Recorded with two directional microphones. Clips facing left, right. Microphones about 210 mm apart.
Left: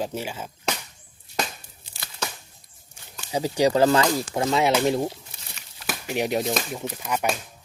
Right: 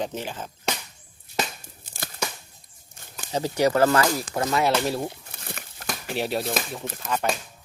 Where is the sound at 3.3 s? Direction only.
15° left (ahead or behind).